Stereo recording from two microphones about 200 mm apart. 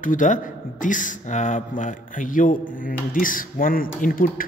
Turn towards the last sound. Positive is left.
turn(degrees=45)  # may be behind; listen again after turning